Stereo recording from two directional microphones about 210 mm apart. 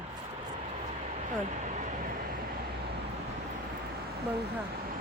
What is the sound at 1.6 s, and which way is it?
Vehicle, 35° right (ahead or behind).